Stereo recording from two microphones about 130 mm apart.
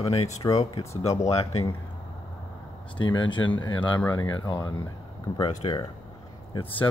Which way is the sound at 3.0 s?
40° left (ahead or behind).